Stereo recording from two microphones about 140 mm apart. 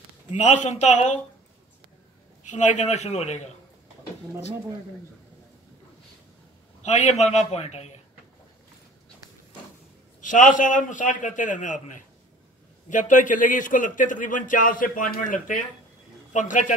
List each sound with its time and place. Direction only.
0.3 s a man's voice: 60° left (ahead or behind)
2.5 s a man's voice: 60° left (ahead or behind)
6.8 s a man's voice: 55° left (ahead or behind)
10.2 s a man's voice: 70° left (ahead or behind)